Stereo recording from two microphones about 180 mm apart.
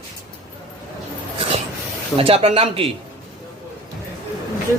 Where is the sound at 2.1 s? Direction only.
30° right (ahead or behind).